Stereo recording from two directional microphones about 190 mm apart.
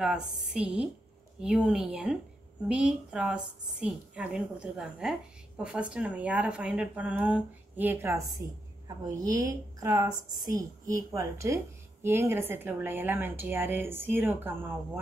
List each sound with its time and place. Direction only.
0.0 s a woman's voice: 5° right (ahead or behind)